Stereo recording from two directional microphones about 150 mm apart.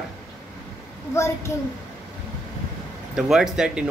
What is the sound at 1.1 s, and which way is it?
Speech, 20° left (ahead or behind).